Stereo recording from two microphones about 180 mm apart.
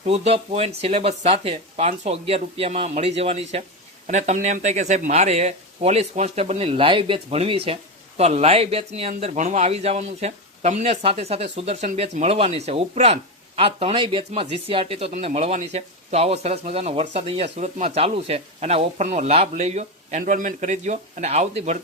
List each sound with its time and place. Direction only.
0.0 s speech: 35° right (ahead or behind)